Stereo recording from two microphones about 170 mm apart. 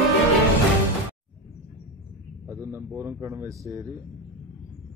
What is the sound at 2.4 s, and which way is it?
A man's voice, 15° right (ahead or behind).